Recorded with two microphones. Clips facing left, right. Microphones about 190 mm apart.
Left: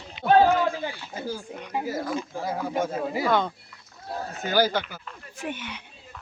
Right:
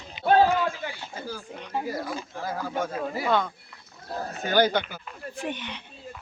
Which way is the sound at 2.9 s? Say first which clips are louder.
Even; 10° left (ahead or behind).